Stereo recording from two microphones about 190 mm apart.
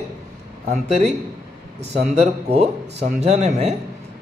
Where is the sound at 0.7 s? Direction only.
35° right (ahead or behind).